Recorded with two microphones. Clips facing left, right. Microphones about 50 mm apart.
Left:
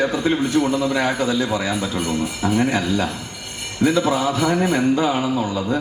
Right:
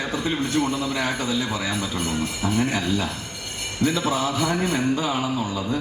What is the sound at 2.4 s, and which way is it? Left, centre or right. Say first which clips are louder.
Speech: left 5 dB; left.